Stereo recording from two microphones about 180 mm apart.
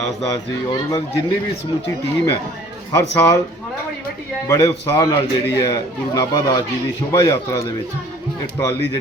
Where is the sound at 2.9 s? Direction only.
20° left (ahead or behind).